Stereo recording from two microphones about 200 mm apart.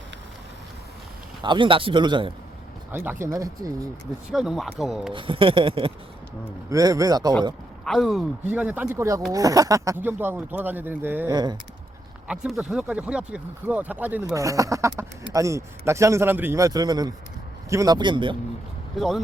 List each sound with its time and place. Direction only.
1.4 s a man's voice: 25° right (ahead or behind)
2.9 s speech: 10° right (ahead or behind)
4.3 s speech: centre (ahead or behind)
5.1 s a man's voice: 25° right (ahead or behind)
7.9 s a man's voice: centre (ahead or behind); by 18.3 s 25° right (ahead or behind)
18.9 s speech: centre (ahead or behind)